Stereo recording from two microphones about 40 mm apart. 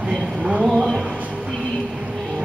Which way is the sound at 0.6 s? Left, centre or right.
Centre.